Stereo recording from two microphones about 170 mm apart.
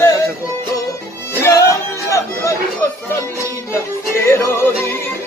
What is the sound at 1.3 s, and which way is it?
Music, 15° left (ahead or behind).